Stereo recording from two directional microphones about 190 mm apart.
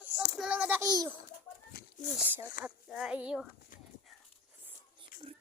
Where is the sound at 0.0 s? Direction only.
5° right (ahead or behind).